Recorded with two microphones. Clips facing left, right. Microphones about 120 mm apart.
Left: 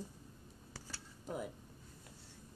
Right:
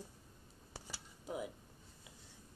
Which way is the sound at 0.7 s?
15° right (ahead or behind).